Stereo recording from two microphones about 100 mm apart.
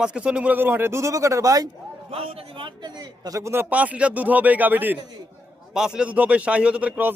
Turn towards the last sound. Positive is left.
turn(degrees=-15)  # may be behind; listen again after turning